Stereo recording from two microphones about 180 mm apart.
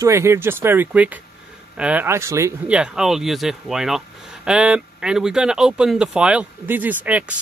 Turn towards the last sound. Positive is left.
turn(degrees=-10)  # may be behind; listen again after turning